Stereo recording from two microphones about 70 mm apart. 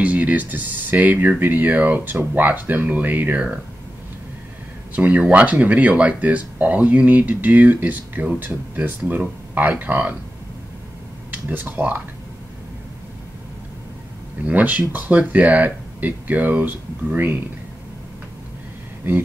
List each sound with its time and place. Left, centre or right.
0.0 s speech: right
4.9 s speech: right
11.3 s speech: right
14.4 s speech: right